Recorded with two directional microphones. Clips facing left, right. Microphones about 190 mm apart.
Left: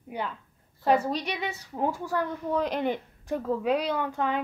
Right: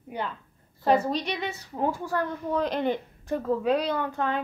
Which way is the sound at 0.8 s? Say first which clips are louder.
Right 1 dB; 10° left (ahead or behind).